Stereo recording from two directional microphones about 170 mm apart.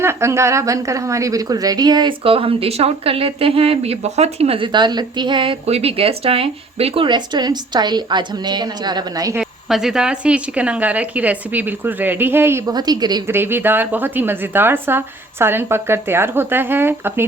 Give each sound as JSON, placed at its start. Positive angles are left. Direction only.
{"t": 0.0, "sound": "a woman's voice", "side_deg": -15}
{"t": 9.4, "sound": "speech", "side_deg": -5}
{"t": 13.3, "sound": "speech", "side_deg": -10}